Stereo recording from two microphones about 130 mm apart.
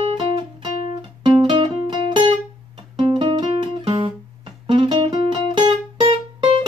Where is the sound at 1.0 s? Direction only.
40° right (ahead or behind).